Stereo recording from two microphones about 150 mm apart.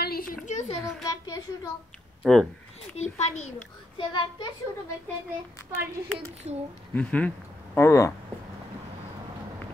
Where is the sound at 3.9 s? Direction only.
35° left (ahead or behind).